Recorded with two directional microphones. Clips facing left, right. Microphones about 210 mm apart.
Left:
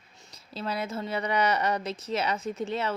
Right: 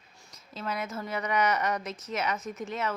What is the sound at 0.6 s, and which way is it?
A woman's voice, 30° left (ahead or behind).